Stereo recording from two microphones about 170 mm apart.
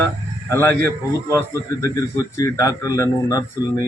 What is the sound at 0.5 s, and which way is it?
Speech, 10° left (ahead or behind).